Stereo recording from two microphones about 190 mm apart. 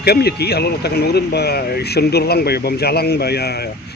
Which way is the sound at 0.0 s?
60° left (ahead or behind).